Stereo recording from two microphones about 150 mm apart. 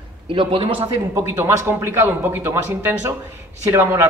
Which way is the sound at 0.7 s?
15° right (ahead or behind).